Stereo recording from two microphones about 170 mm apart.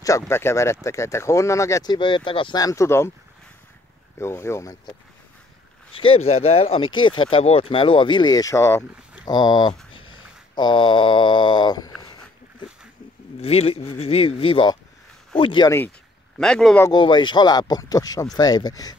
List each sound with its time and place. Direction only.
0.3 s speech: 15° left (ahead or behind)
4.2 s speech: 15° left (ahead or behind)
5.9 s speech: 35° left (ahead or behind)
9.9 s a sound: 25° left (ahead or behind)
13.4 s speech: 35° left (ahead or behind)
16.3 s speech: 5° left (ahead or behind)
16.8 s speech: 25° left (ahead or behind)